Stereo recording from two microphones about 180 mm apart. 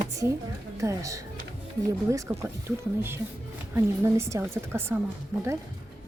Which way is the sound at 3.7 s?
15° right (ahead or behind).